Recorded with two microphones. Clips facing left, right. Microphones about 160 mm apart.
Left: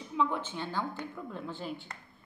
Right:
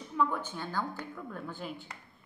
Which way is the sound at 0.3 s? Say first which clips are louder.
Left 1 dB; 20° left (ahead or behind).